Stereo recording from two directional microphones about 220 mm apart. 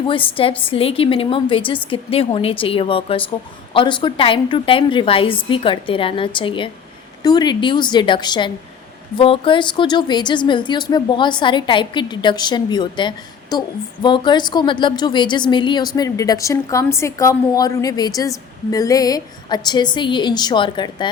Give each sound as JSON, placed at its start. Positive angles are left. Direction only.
{"t": 0.1, "sound": "a woman's voice", "side_deg": 25}